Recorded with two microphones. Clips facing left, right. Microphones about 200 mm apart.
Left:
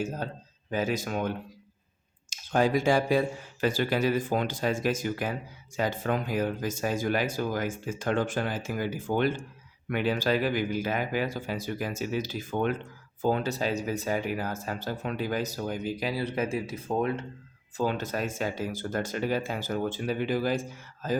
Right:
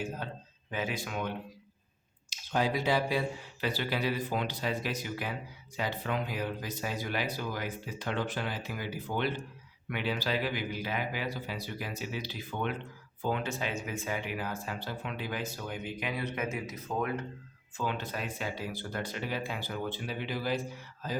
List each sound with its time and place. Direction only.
0.0 s speech: 40° left (ahead or behind)
2.3 s speech: 50° left (ahead or behind); by 17.2 s 25° left (ahead or behind)
17.7 s speech: 40° left (ahead or behind)